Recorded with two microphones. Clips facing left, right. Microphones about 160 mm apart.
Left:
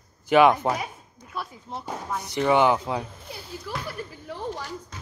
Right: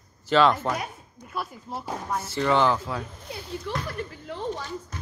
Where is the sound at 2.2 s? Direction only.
15° left (ahead or behind).